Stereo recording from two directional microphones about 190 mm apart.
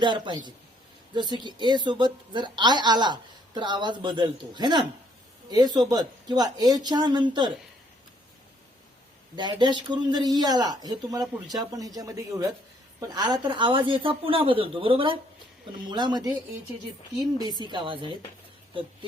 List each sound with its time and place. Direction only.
0.0 s a woman's voice: 25° right (ahead or behind)
9.3 s a woman's voice: 25° right (ahead or behind)
17.6 s a woman's voice: 25° right (ahead or behind)